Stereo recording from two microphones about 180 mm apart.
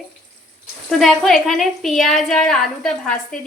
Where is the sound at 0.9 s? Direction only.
Centre (ahead or behind).